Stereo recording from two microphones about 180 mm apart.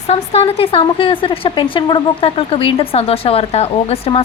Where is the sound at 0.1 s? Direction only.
35° left (ahead or behind).